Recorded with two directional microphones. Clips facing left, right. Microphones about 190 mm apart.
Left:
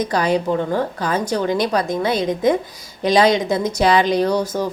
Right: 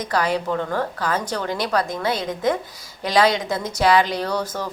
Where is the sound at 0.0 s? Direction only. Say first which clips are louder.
Left 4 dB; 15° left (ahead or behind).